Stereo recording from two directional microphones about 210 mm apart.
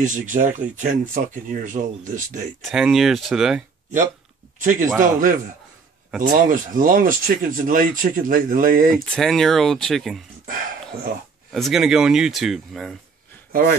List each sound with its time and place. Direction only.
0.0 s speech: 35° right (ahead or behind)
2.6 s speech: centre (ahead or behind)
4.6 s speech: 40° right (ahead or behind)
9.0 s speech: centre (ahead or behind)
11.5 s speech: centre (ahead or behind)
13.5 s speech: 45° right (ahead or behind)